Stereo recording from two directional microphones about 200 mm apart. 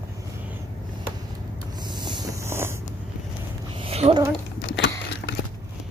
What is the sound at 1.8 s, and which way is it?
Boat, 20° right (ahead or behind).